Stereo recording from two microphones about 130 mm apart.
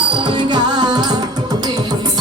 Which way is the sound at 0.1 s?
40° right (ahead or behind).